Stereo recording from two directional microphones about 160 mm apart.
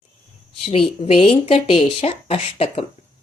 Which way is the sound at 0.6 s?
35° left (ahead or behind).